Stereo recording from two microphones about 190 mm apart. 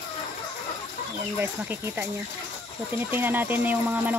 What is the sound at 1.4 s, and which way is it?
Speech, 10° right (ahead or behind).